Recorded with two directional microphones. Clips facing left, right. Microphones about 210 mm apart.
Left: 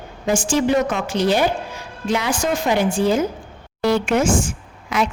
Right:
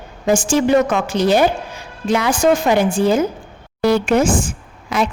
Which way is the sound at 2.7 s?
60° right (ahead or behind).